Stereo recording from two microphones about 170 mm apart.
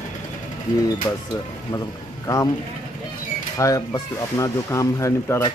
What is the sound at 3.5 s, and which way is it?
Speech, 20° left (ahead or behind).